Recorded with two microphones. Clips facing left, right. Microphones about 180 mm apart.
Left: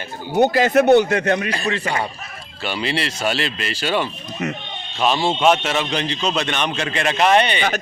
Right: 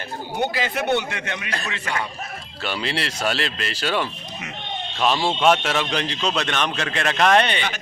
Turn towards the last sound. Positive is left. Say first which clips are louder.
# left 2 dB
turn(degrees=5)  # may be behind; listen again after turning